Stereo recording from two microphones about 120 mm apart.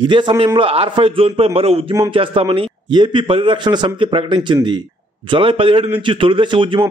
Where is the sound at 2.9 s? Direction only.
40° right (ahead or behind).